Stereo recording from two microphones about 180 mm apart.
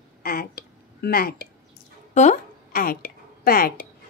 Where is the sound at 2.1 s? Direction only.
40° left (ahead or behind).